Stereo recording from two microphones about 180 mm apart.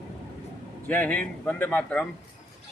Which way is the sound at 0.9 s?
10° left (ahead or behind).